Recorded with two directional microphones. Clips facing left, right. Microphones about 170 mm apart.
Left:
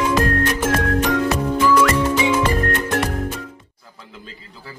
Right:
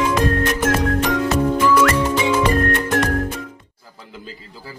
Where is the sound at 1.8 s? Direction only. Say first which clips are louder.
Even; 10° left (ahead or behind).